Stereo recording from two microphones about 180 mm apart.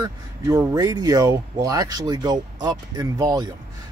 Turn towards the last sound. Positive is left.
turn(degrees=-20)  # may be behind; listen again after turning